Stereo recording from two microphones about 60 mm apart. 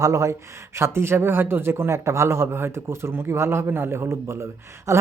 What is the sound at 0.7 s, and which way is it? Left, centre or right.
A man's voice, right.